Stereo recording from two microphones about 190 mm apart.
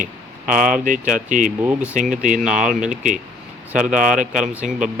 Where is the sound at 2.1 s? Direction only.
45° right (ahead or behind).